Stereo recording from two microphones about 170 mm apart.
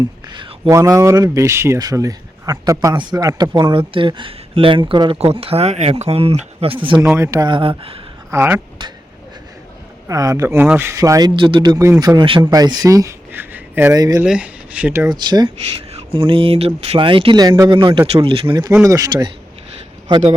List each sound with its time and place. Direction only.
0.3 s speech: 25° right (ahead or behind)
7.0 s speech: 15° right (ahead or behind); by 8.0 s 35° right (ahead or behind)
8.3 s speech: 15° right (ahead or behind)
10.1 s speech: 20° right (ahead or behind)
14.3 s speech: 5° right (ahead or behind)
15.1 s speech: 25° right (ahead or behind)